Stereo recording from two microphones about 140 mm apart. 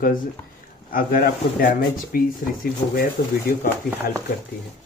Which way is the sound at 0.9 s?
85° left.